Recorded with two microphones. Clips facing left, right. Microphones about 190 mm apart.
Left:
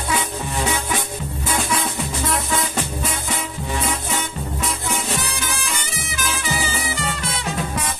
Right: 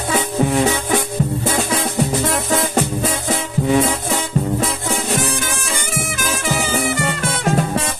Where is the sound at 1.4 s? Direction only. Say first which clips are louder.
Right 4 dB; 45° right (ahead or behind).